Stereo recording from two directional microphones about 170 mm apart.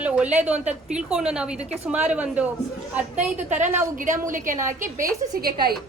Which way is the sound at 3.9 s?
50° right (ahead or behind).